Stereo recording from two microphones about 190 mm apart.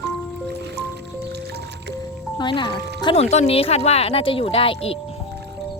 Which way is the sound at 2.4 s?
25° left (ahead or behind).